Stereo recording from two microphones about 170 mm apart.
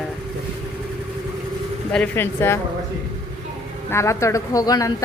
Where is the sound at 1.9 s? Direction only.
10° left (ahead or behind).